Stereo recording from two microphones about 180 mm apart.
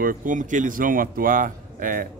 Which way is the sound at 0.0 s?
50° right (ahead or behind).